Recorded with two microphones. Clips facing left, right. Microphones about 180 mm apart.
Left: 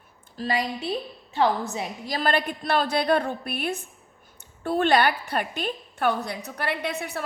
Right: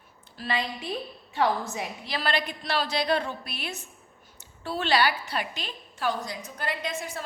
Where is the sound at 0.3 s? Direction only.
40° left (ahead or behind).